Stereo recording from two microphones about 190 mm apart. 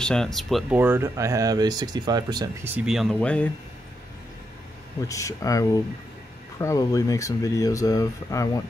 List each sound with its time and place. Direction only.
0.0 s speech: 5° left (ahead or behind)
5.0 s speech: 15° left (ahead or behind)